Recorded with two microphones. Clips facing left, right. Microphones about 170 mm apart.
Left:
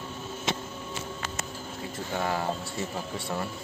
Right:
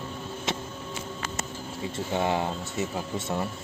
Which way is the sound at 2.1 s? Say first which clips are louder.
Right 2 dB; 20° right (ahead or behind).